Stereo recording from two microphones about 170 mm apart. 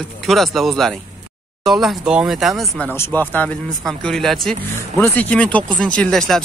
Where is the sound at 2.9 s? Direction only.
10° left (ahead or behind).